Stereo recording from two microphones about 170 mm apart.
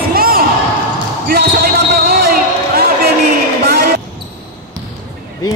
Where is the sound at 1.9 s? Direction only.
65° right (ahead or behind).